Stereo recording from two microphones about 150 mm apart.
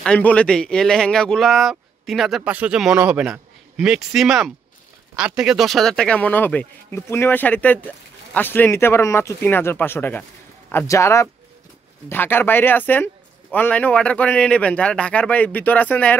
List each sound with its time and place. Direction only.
0.0 s speech: 10° left (ahead or behind)